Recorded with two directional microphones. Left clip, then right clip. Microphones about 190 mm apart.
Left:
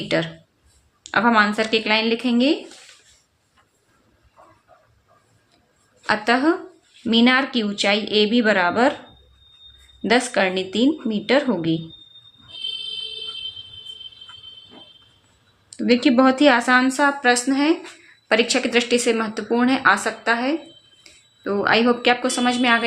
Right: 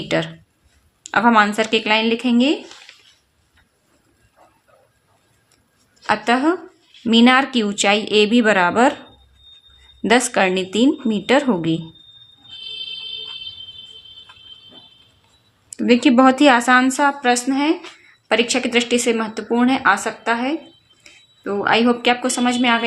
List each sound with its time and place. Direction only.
0.1 s speech: 25° right (ahead or behind)
6.0 s speech: 20° right (ahead or behind)
10.0 s speech: 25° right (ahead or behind)
15.7 s speech: 25° right (ahead or behind)